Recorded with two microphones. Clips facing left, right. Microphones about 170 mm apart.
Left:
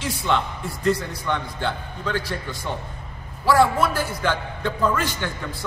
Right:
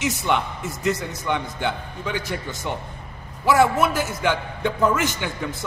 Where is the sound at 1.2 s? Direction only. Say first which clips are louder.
Right 4 dB; 15° right (ahead or behind).